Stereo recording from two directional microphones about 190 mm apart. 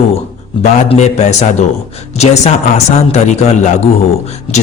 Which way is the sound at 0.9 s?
35° left (ahead or behind).